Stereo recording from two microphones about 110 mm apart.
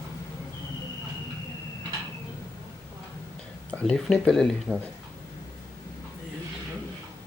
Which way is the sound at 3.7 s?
5° left (ahead or behind).